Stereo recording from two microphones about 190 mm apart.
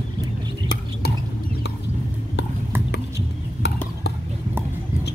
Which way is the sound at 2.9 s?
60° left (ahead or behind).